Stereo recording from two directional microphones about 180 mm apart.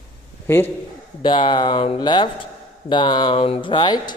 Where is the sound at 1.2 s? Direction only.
25° left (ahead or behind).